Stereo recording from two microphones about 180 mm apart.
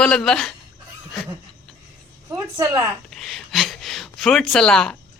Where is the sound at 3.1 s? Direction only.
Centre (ahead or behind).